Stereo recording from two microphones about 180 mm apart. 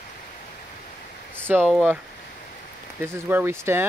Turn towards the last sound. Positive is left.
turn(degrees=-10)  # may be behind; listen again after turning